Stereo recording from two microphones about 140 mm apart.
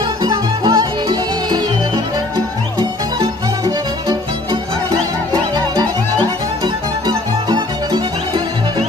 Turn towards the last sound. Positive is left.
turn(degrees=-30)  # may be behind; listen again after turning